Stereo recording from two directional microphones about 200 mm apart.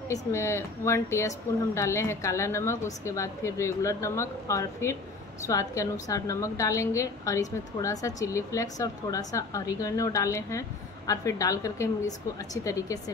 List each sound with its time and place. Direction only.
0.1 s a woman's voice: 15° left (ahead or behind)